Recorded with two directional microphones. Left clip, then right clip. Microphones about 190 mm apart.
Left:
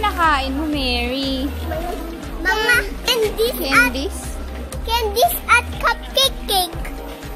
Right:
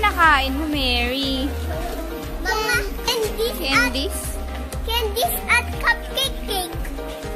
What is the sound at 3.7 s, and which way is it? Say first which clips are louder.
Speech: left 4 dB; 65° left (ahead or behind).